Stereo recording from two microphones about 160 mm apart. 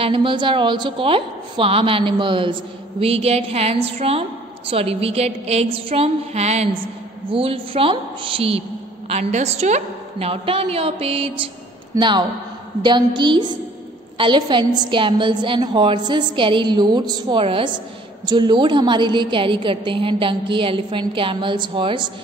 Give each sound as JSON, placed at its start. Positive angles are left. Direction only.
{"t": 0.0, "sound": "a woman's voice", "side_deg": -30}
{"t": 11.9, "sound": "a woman's voice", "side_deg": -25}